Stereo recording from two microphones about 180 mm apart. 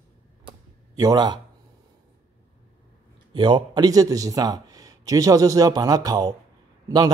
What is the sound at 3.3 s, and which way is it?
Speech, 25° right (ahead or behind).